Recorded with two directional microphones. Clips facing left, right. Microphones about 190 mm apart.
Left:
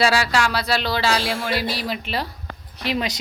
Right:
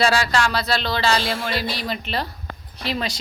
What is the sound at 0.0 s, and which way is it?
Music, 5° left (ahead or behind).